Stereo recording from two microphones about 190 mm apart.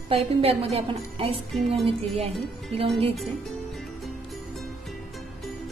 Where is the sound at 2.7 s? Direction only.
30° right (ahead or behind).